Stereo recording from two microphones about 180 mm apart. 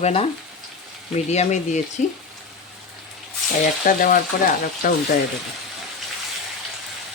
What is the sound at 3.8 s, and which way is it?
Speech, 50° left (ahead or behind).